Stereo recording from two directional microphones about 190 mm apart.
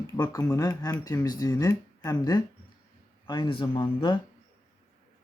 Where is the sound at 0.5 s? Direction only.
20° left (ahead or behind).